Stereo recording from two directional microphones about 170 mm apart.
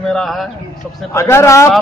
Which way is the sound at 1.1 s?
15° left (ahead or behind).